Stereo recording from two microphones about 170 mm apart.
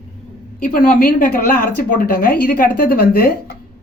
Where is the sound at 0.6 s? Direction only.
60° left (ahead or behind).